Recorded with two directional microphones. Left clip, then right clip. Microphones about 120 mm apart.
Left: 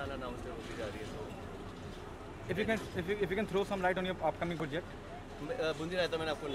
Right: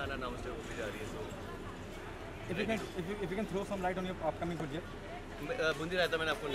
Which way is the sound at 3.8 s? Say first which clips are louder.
Left 3 dB; 40° left (ahead or behind).